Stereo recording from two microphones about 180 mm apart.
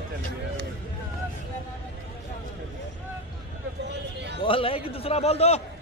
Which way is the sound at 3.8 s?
70° right (ahead or behind).